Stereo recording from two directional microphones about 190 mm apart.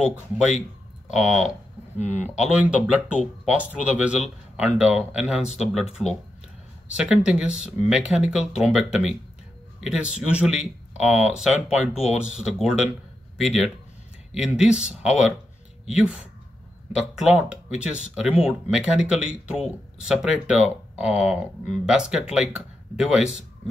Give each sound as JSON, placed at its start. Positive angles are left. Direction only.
{"t": 1.0, "sound": "speech", "side_deg": -5}
{"t": 2.0, "sound": "speech", "side_deg": 35}
{"t": 2.2, "sound": "speech", "side_deg": -5}
{"t": 7.0, "sound": "speech", "side_deg": -5}